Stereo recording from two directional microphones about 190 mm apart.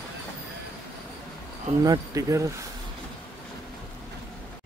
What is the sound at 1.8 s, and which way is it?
Speech, 20° right (ahead or behind).